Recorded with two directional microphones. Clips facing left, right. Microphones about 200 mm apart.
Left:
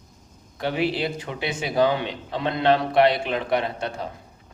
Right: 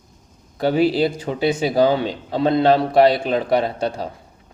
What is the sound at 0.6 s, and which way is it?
Speech, 35° right (ahead or behind).